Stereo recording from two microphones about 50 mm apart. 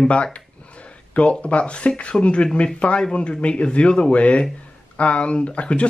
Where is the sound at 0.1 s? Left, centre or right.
Left.